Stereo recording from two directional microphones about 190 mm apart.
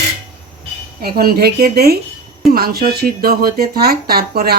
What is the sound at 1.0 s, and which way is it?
Speech, 55° right (ahead or behind).